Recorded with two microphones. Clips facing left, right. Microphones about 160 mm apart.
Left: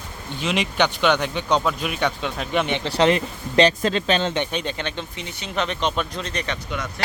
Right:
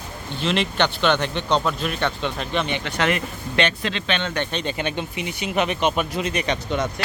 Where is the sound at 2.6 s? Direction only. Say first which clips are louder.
Left 8 dB; 25° left (ahead or behind).